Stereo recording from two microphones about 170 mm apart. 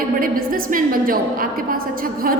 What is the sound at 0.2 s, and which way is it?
A woman's voice, 55° right (ahead or behind).